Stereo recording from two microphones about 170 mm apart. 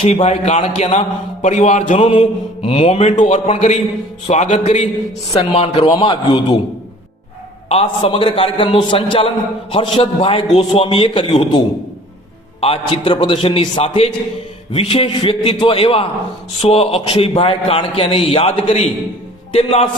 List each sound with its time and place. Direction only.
0.0 s mantra: 35° left (ahead or behind)
4.3 s a man's voice: 45° left (ahead or behind)
5.3 s mantra: 35° left (ahead or behind)
7.7 s mantra: 35° left (ahead or behind)